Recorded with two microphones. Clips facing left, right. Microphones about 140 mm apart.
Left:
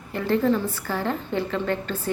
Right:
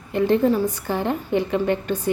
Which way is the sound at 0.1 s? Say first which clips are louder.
Right 4 dB; 20° right (ahead or behind).